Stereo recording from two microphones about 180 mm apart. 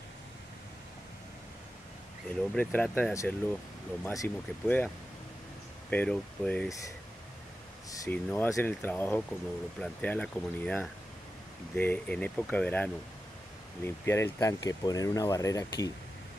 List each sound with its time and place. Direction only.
2.5 s speech: 10° left (ahead or behind)
8.0 s speech: 10° left (ahead or behind)